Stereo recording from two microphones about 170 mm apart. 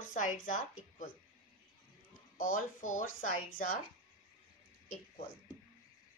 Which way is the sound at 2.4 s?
50° left (ahead or behind).